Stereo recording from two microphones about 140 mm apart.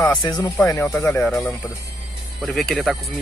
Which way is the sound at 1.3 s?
Centre (ahead or behind).